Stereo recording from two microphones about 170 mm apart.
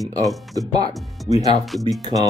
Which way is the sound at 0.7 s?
20° right (ahead or behind).